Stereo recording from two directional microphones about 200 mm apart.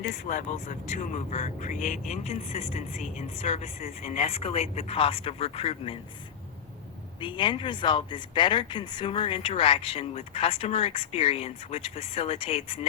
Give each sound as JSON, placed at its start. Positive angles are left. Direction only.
{"t": 0.3, "sound": "speech", "side_deg": 40}
{"t": 7.2, "sound": "speech", "side_deg": 25}